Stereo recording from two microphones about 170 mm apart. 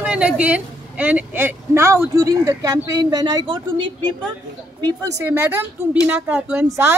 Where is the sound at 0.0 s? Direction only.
5° right (ahead or behind).